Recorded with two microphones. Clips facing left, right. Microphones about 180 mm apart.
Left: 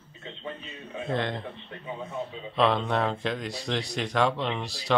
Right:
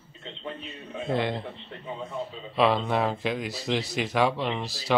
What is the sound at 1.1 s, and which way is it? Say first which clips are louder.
Speech: right 2 dB; 10° right (ahead or behind).